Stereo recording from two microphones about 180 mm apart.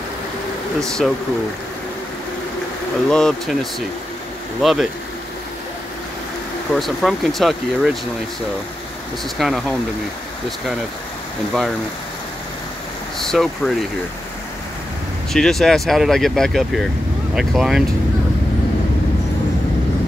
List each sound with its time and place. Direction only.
0.7 s speech: centre (ahead or behind)
3.1 s speech: 5° left (ahead or behind)
4.6 s speech: centre (ahead or behind)
6.7 s speech: centre (ahead or behind)
9.4 s speech: centre (ahead or behind)
13.2 s speech: centre (ahead or behind)
15.3 s speech: centre (ahead or behind)